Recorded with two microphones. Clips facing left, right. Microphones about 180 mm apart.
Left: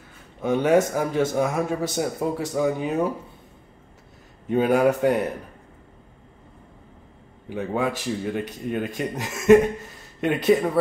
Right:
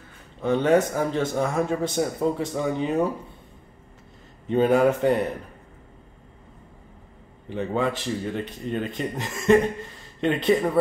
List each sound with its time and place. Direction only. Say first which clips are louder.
0.4 s a man's voice: left 1 dB; 10° left (ahead or behind)
4.5 s a man's voice: even; 5° left (ahead or behind)
7.4 s a man's voice: even; 5° left (ahead or behind)